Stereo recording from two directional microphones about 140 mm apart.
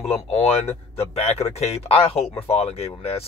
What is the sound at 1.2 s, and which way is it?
Speech, 45° left (ahead or behind).